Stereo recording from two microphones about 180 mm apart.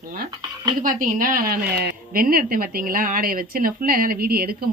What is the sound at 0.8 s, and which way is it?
A woman's voice, 50° right (ahead or behind).